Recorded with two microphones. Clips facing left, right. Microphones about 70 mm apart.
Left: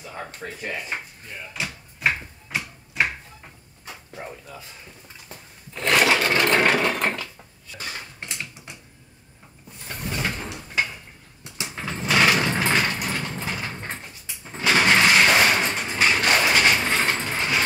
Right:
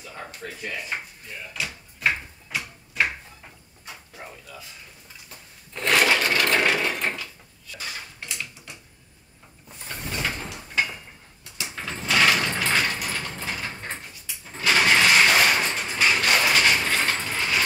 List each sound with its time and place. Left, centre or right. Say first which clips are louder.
0.2 s speech: left 1 dB; left
2.0 s a sound: left 1 dB; centre
4.2 s speech: left 5 dB; left
5.7 s sewing machine: left 1 dB; centre
6.2 s engine: left 2 dB; left
6.7 s sewing machine: left 3 dB; left
7.7 s dishes: left 1 dB; left
9.8 s a sound: left 1 dB; centre
10.4 s sliding door: even; centre
14.6 s a sound: left 1 dB; left